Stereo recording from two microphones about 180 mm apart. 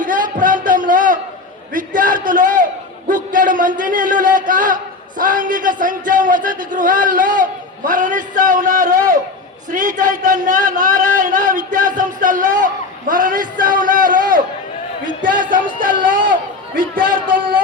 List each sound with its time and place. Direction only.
0.0 s a sound: 50° right (ahead or behind)
3.1 s a man's voice: 50° right (ahead or behind)
17.2 s speech: 30° right (ahead or behind)